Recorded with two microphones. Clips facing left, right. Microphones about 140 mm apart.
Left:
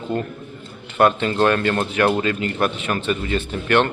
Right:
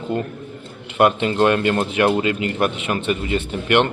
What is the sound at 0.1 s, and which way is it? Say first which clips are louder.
Speech: even; 20° right (ahead or behind).